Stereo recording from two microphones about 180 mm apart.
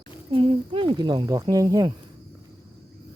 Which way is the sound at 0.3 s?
25° right (ahead or behind).